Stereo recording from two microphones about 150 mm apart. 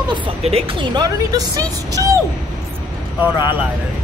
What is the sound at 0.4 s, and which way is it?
Speech, 40° right (ahead or behind).